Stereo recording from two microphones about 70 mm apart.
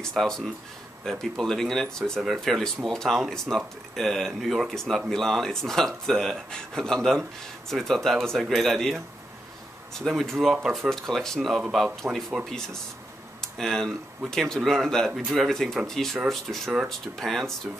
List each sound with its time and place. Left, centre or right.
0.0 s speech: centre
10.1 s speech: centre
15.0 s speech: centre